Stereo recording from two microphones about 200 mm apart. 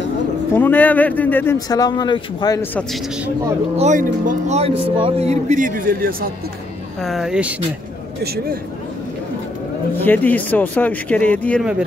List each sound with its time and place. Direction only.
0.6 s speech: 10° left (ahead or behind)
3.7 s speech: 35° right (ahead or behind)
7.0 s speech: centre (ahead or behind)
8.2 s speech: 50° right (ahead or behind)
10.0 s speech: 10° left (ahead or behind)